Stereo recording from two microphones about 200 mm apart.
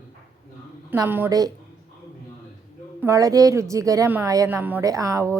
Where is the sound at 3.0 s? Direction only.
15° right (ahead or behind).